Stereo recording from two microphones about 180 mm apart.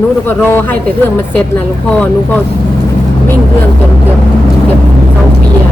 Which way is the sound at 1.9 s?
10° left (ahead or behind).